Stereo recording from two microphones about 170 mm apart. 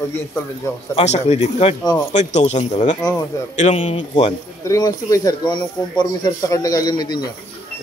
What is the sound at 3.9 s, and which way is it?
Speech, 30° left (ahead or behind).